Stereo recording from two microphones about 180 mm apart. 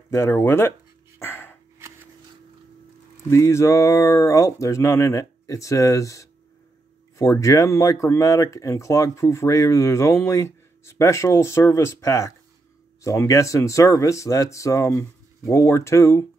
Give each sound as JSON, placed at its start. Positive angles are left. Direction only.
{"t": 0.1, "sound": "speech", "side_deg": 15}
{"t": 1.2, "sound": "a sound", "side_deg": 10}
{"t": 3.3, "sound": "speech", "side_deg": 15}